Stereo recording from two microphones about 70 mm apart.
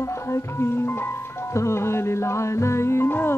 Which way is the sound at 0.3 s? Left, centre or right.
Left.